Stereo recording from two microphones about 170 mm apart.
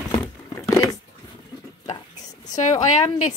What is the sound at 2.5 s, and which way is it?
Speech, 45° left (ahead or behind).